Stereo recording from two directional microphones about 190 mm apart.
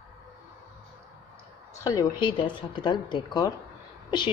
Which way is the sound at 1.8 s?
20° left (ahead or behind).